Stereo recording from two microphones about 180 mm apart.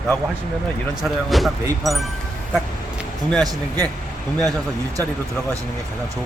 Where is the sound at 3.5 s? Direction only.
20° right (ahead or behind).